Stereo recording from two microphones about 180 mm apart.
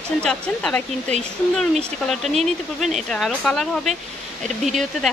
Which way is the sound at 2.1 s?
Centre (ahead or behind).